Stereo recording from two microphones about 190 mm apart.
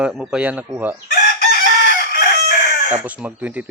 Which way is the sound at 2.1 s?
45° left (ahead or behind).